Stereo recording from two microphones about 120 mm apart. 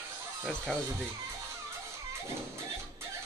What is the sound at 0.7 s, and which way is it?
Speech, 10° left (ahead or behind).